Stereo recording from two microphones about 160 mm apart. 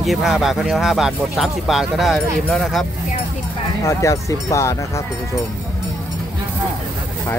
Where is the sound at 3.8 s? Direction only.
20° left (ahead or behind).